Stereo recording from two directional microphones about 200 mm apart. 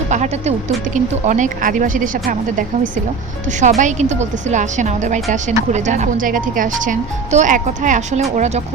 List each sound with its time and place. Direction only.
0.1 s speech: 35° right (ahead or behind)